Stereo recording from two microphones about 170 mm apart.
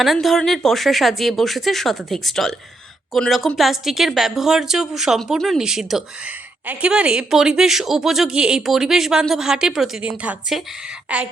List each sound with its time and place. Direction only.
0.0 s a woman's voice: centre (ahead or behind)